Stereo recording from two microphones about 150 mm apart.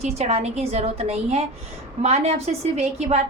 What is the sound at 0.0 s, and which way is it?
A woman's voice, 45° right (ahead or behind).